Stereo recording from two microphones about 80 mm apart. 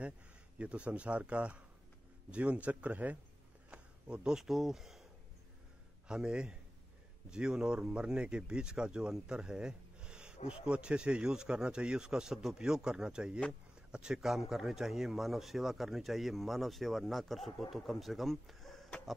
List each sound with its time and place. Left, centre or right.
0.6 s speech: centre
6.0 s speech: centre